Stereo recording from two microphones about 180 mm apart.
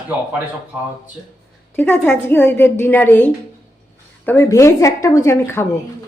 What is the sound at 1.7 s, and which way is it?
A woman's voice, 10° left (ahead or behind).